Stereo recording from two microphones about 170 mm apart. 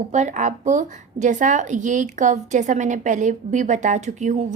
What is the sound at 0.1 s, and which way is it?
A woman's voice, 45° right (ahead or behind).